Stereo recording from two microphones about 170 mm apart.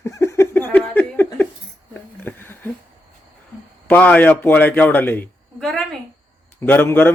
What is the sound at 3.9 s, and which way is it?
Speech, 10° left (ahead or behind).